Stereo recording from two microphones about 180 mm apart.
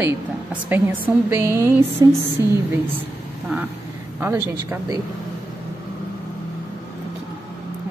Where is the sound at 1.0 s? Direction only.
15° right (ahead or behind).